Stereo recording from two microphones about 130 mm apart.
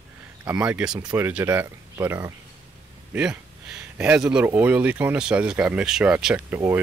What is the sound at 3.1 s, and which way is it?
Speech, 5° right (ahead or behind).